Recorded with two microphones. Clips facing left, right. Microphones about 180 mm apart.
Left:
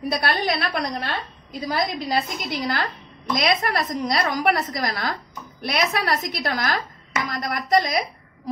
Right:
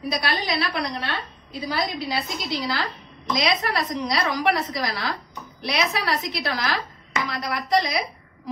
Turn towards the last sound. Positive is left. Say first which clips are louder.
# left 2 dB
turn(degrees=45)  # may be behind; listen again after turning